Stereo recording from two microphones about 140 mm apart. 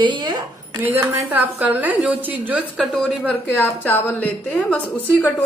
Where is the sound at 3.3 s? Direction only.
15° left (ahead or behind).